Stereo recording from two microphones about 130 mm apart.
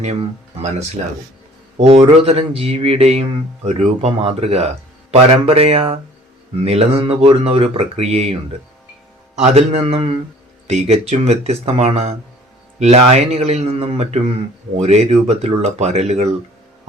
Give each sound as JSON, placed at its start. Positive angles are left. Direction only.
{"t": 0.0, "sound": "a man's voice", "side_deg": -60}
{"t": 1.8, "sound": "speech", "side_deg": -45}
{"t": 9.5, "sound": "speech", "side_deg": -50}
{"t": 10.7, "sound": "a man's voice", "side_deg": -55}